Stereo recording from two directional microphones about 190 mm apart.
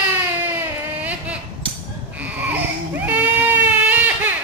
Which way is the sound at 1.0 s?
5° right (ahead or behind).